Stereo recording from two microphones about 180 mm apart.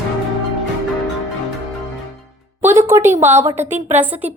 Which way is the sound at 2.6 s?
15° right (ahead or behind).